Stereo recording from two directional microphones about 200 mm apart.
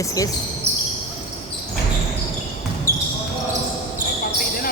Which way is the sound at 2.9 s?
50° left (ahead or behind).